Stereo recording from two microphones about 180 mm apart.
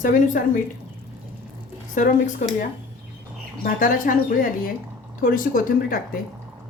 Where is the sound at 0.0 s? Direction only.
50° left (ahead or behind).